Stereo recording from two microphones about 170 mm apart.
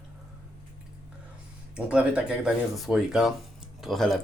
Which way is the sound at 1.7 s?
5° right (ahead or behind).